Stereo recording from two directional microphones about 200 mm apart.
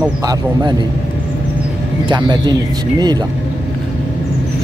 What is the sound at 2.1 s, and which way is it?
Speech, 20° right (ahead or behind).